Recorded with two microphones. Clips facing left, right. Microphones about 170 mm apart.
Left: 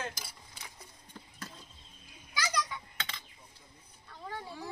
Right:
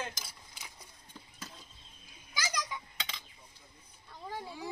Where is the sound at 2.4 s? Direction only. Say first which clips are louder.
Left 3 dB; 10° right (ahead or behind).